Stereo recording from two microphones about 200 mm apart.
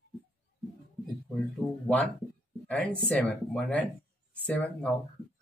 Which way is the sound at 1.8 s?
5° left (ahead or behind).